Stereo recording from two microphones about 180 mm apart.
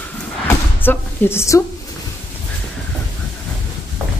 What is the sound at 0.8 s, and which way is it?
Speech, 10° left (ahead or behind).